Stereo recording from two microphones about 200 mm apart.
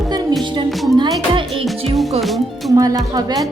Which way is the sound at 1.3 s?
25° right (ahead or behind).